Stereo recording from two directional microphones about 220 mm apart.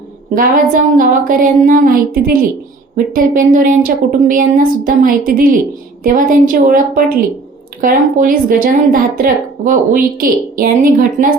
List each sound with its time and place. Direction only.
0.3 s a woman's voice: 40° right (ahead or behind)